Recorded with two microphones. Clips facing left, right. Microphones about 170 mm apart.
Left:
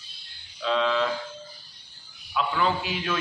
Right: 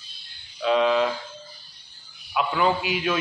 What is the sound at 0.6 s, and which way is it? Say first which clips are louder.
Speech: right 4 dB; 15° right (ahead or behind).